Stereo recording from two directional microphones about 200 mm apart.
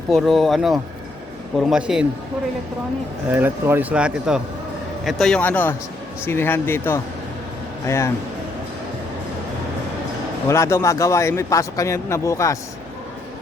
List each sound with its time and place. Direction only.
0.1 s a man's voice: centre (ahead or behind)
3.3 s a man's voice: 10° right (ahead or behind); by 8.1 s 15° left (ahead or behind)
10.5 s a man's voice: 15° left (ahead or behind)